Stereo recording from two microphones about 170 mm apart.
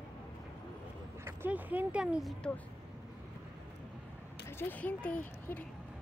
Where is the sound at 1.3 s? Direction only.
10° right (ahead or behind).